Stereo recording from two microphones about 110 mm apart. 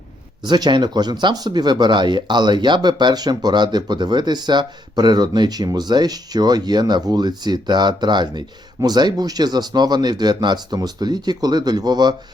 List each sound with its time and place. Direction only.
0.4 s speech: 40° right (ahead or behind)